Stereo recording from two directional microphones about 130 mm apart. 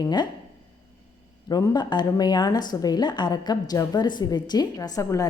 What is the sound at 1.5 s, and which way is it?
A woman's voice, 30° left (ahead or behind).